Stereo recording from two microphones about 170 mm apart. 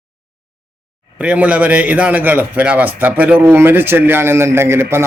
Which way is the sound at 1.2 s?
10° right (ahead or behind).